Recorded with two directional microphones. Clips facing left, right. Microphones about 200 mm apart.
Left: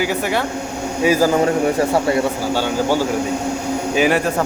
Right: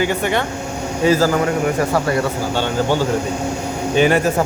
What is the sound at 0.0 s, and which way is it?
A man's voice, 5° left (ahead or behind).